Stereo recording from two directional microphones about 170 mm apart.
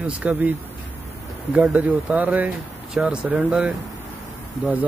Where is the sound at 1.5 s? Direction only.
5° right (ahead or behind).